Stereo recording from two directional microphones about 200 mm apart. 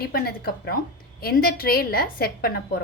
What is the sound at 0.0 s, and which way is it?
A woman's voice, 50° left (ahead or behind).